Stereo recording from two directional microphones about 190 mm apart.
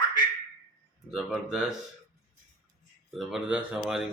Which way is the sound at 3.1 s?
Centre (ahead or behind).